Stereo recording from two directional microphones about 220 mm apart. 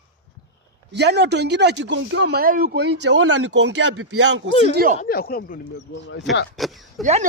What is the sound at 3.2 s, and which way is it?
Speech, 80° right.